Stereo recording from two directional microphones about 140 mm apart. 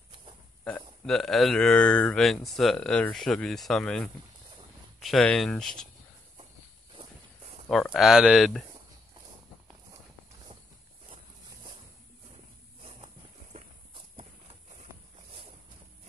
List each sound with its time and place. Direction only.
0.7 s speech: 5° left (ahead or behind)
7.7 s speech: centre (ahead or behind)